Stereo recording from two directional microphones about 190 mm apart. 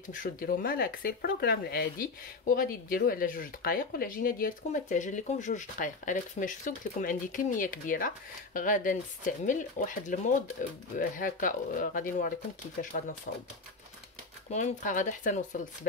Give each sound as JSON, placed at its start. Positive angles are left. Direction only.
{"t": 0.1, "sound": "speech", "side_deg": 45}
{"t": 14.5, "sound": "speech", "side_deg": 40}